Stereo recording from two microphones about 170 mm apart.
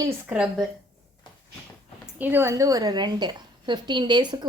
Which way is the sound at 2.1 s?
10° right (ahead or behind).